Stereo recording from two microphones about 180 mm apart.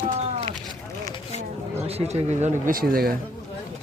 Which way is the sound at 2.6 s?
55° right (ahead or behind).